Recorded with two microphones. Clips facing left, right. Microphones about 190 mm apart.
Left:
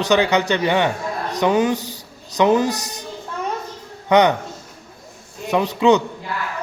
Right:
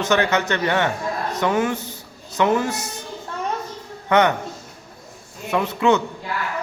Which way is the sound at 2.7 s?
40° left (ahead or behind).